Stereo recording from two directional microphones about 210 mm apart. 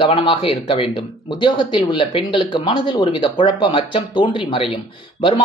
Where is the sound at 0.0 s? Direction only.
25° left (ahead or behind).